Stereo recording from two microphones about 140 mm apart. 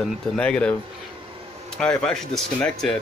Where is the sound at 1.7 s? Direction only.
5° left (ahead or behind).